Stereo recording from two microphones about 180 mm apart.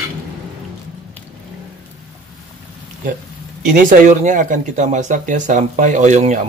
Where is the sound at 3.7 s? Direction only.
45° right (ahead or behind).